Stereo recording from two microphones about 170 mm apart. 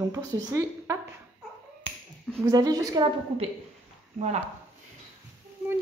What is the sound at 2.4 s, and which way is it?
Speech, 20° right (ahead or behind).